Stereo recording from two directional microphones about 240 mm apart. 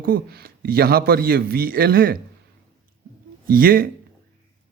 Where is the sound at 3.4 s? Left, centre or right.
Right.